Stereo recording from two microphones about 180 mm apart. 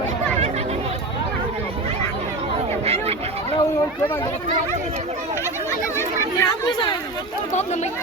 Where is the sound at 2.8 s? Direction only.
35° right (ahead or behind).